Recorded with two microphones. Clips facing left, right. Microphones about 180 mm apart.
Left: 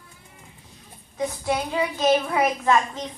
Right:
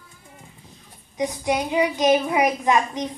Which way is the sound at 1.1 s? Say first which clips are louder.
Right 2 dB; 15° right (ahead or behind).